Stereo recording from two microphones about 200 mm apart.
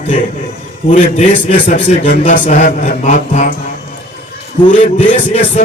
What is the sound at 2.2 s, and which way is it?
Speech, 35° left (ahead or behind).